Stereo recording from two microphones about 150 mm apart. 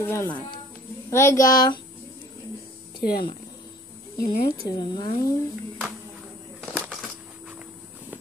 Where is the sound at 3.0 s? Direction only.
90° left.